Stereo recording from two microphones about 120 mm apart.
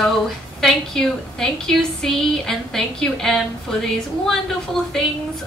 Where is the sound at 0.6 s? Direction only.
5° left (ahead or behind).